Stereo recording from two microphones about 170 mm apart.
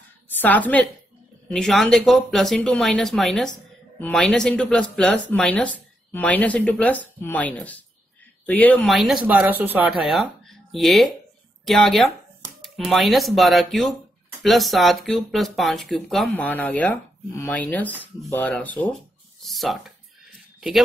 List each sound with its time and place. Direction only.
0.4 s speech: 10° left (ahead or behind)